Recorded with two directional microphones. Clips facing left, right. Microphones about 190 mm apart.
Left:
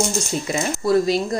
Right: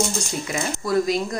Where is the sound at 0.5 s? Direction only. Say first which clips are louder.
Left 4 dB; 30° left (ahead or behind).